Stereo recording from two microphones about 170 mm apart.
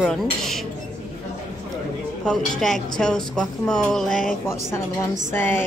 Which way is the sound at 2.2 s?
5° left (ahead or behind).